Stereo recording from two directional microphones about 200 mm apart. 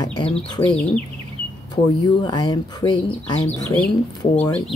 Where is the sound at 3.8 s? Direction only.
5° left (ahead or behind).